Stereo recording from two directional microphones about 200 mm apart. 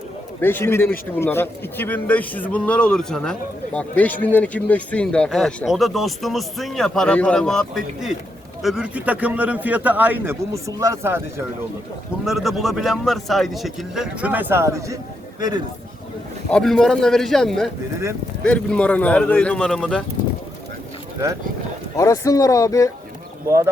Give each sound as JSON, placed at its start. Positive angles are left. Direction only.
{"t": 0.4, "sound": "a man's voice", "side_deg": 10}
{"t": 12.2, "sound": "a man's voice", "side_deg": 0}
{"t": 16.5, "sound": "a man's voice", "side_deg": 5}
{"t": 21.9, "sound": "speech", "side_deg": 15}